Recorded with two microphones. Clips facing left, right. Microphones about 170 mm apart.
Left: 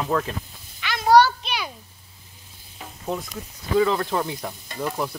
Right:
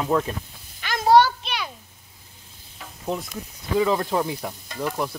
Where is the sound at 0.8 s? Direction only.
45° right (ahead or behind).